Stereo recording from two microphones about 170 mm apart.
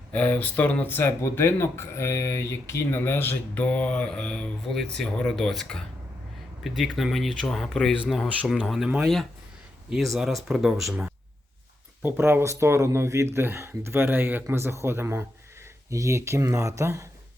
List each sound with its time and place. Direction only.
0.1 s speech: 10° left (ahead or behind)
12.0 s speech: 15° right (ahead or behind)